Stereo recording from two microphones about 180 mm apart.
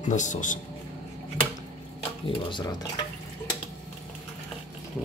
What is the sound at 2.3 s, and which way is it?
Speech, 25° left (ahead or behind).